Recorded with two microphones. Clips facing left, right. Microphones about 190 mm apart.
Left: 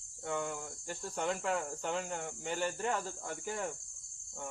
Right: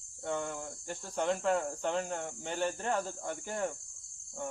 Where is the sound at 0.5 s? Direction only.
5° left (ahead or behind).